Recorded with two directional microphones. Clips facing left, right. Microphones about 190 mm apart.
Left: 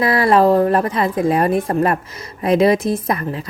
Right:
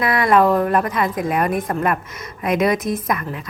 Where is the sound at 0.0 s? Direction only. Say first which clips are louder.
Left 2 dB; 30° left (ahead or behind).